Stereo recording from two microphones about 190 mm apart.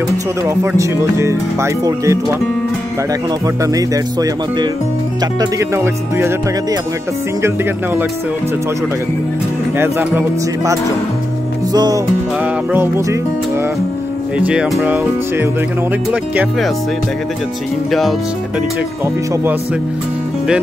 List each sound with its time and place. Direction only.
0.5 s speech: 15° right (ahead or behind)
3.6 s speech: 20° right (ahead or behind)
9.8 s speech: 10° right (ahead or behind)
14.4 s speech: 5° right (ahead or behind)